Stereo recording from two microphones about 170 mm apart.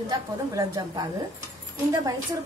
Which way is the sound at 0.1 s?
20° right (ahead or behind).